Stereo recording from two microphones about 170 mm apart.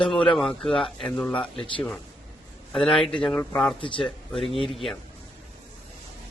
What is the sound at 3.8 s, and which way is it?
Speech, 30° left (ahead or behind).